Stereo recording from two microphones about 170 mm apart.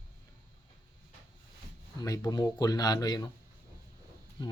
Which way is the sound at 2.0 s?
20° left (ahead or behind).